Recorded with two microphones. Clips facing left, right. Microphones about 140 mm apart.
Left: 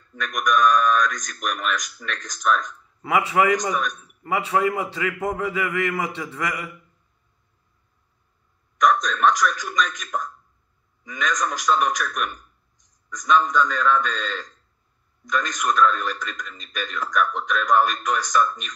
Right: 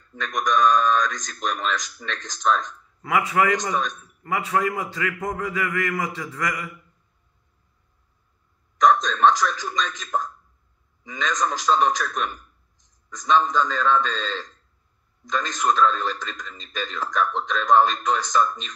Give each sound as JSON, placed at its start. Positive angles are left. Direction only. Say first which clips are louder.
{"t": 0.1, "sound": "a man's voice", "louder": "left 1 dB", "side_deg": -25}
{"t": 3.0, "sound": "a man's voice", "louder": "left 1 dB", "side_deg": 25}
{"t": 8.7, "sound": "a man's voice", "louder": "right 1 dB", "side_deg": -25}